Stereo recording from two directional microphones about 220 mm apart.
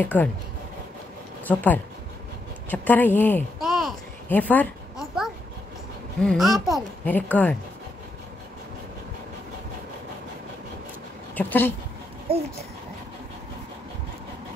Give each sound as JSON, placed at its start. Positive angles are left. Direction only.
{"t": 0.0, "sound": "speech", "side_deg": 10}
{"t": 1.5, "sound": "speech", "side_deg": 5}
{"t": 2.7, "sound": "a sound", "side_deg": 10}
{"t": 6.2, "sound": "speech", "side_deg": 0}
{"t": 11.3, "sound": "speech", "side_deg": 10}
{"t": 12.3, "sound": "speech", "side_deg": -25}